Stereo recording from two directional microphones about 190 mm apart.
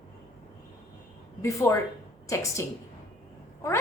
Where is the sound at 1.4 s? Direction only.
15° left (ahead or behind).